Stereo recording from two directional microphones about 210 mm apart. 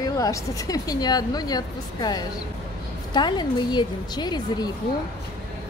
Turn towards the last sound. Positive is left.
turn(degrees=20)  # may be behind; listen again after turning